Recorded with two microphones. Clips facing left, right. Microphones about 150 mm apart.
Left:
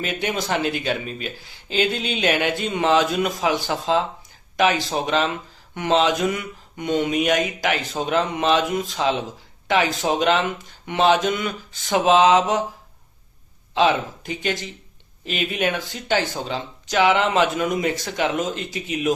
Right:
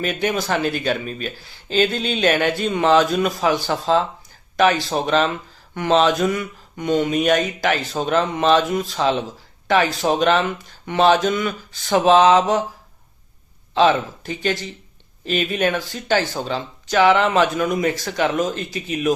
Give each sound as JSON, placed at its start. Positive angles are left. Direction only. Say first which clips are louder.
{"t": 0.0, "sound": "speech", "louder": "right 3 dB", "side_deg": 20}
{"t": 13.7, "sound": "speech", "louder": "right 3 dB", "side_deg": 20}